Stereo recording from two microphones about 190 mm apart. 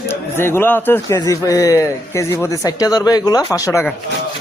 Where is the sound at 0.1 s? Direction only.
10° left (ahead or behind).